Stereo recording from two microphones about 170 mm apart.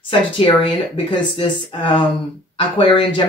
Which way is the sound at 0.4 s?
30° left (ahead or behind).